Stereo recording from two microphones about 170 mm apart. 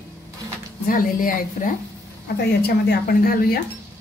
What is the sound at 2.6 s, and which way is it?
Speech, 65° left (ahead or behind).